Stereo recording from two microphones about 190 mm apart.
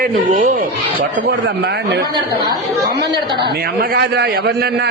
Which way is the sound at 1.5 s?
65° right (ahead or behind).